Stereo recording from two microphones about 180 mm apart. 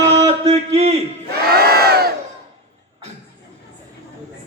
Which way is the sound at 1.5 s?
60° right (ahead or behind).